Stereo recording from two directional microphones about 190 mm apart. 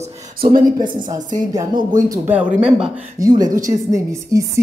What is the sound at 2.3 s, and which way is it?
Speech, 5° right (ahead or behind).